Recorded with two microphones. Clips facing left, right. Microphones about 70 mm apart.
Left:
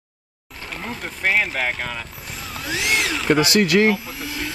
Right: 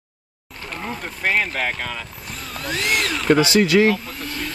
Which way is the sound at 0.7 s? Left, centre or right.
Centre.